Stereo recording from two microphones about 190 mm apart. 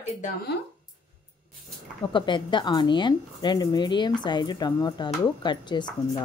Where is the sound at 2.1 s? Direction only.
25° left (ahead or behind).